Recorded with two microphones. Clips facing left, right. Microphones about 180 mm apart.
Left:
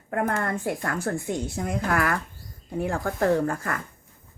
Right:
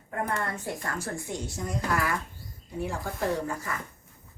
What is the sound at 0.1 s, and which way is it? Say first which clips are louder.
A woman's voice: left 5 dB; 55° left (ahead or behind).